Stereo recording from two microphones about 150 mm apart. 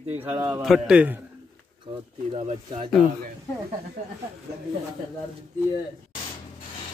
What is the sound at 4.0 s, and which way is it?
Speech, 60° right (ahead or behind).